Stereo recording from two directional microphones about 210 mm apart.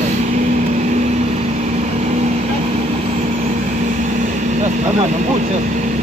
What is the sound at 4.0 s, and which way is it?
Vehicle, 35° right (ahead or behind).